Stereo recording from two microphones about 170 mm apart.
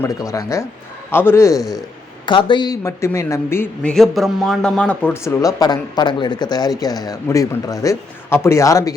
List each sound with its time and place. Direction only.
0.0 s a man's voice: 20° left (ahead or behind)
3.9 s speech: centre (ahead or behind); by 8.9 s 20° left (ahead or behind)